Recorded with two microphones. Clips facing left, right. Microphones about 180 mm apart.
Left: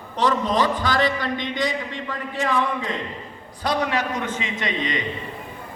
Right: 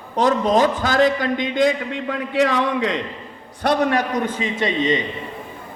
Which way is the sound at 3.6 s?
55° right (ahead or behind).